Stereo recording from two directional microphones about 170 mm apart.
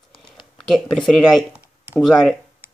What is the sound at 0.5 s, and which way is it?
Speech, centre (ahead or behind).